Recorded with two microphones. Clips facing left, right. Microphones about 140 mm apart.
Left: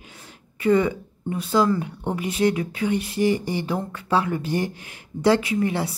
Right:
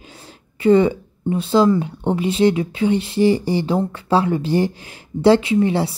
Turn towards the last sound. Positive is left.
turn(degrees=-30)  # may be behind; listen again after turning